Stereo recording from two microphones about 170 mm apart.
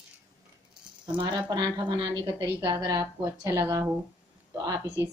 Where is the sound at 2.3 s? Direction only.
15° right (ahead or behind).